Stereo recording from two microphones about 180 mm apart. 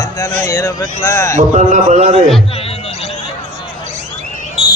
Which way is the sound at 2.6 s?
35° left (ahead or behind).